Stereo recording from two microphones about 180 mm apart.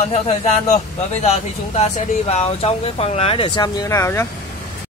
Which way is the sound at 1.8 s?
35° left (ahead or behind).